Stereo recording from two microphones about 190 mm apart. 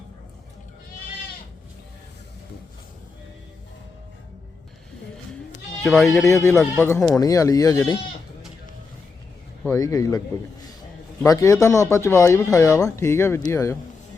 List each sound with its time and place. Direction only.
5.8 s speech: centre (ahead or behind)
6.2 s speech: 15° left (ahead or behind)
9.6 s speech: 20° left (ahead or behind)